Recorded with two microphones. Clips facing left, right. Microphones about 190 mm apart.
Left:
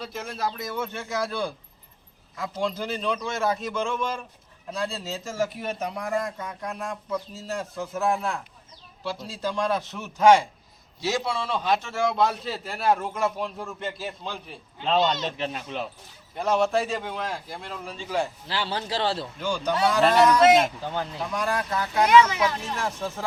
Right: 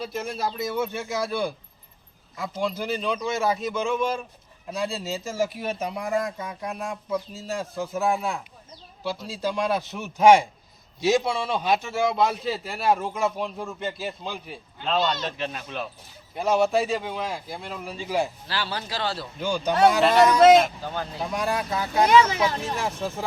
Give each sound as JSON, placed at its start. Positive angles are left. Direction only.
{"t": 0.0, "sound": "a man's voice", "side_deg": -5}
{"t": 2.6, "sound": "a man's voice", "side_deg": -10}
{"t": 14.8, "sound": "speech", "side_deg": 20}
{"t": 16.3, "sound": "a man's voice", "side_deg": -5}
{"t": 18.4, "sound": "speech", "side_deg": 20}
{"t": 19.4, "sound": "speech", "side_deg": -15}
{"t": 19.9, "sound": "a man's voice", "side_deg": -5}
{"t": 20.8, "sound": "speech", "side_deg": 20}
{"t": 21.5, "sound": "speech", "side_deg": -15}
{"t": 21.9, "sound": "speech", "side_deg": -30}